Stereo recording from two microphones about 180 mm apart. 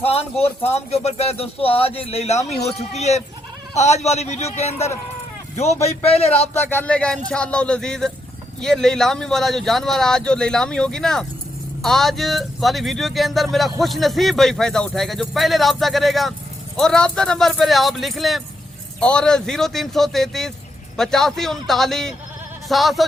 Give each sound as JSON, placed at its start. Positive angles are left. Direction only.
{"t": 0.0, "sound": "speech", "side_deg": 35}
{"t": 6.5, "sound": "speech", "side_deg": 10}